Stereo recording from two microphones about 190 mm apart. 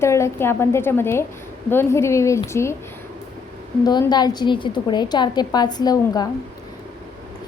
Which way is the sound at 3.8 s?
20° left (ahead or behind).